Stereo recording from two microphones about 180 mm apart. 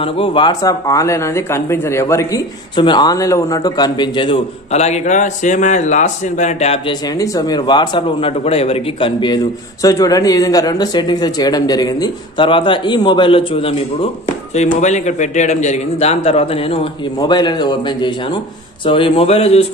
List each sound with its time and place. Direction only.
0.0 s speech: 30° left (ahead or behind)
6.9 s speech: 20° left (ahead or behind)
14.5 s a man's voice: 40° left (ahead or behind)